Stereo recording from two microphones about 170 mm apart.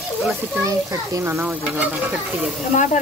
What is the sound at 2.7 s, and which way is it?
Speech, 45° left (ahead or behind).